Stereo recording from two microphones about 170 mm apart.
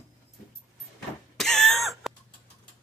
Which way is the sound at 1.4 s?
5° left (ahead or behind).